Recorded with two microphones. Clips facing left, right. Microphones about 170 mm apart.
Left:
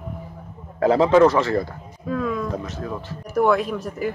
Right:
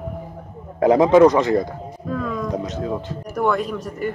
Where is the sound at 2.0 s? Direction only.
5° left (ahead or behind).